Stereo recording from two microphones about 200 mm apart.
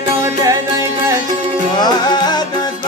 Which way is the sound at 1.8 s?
20° left (ahead or behind).